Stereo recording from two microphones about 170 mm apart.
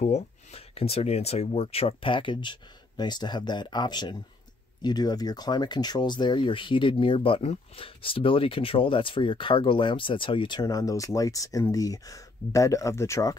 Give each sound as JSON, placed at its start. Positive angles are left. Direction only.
{"t": 0.0, "sound": "speech", "side_deg": 40}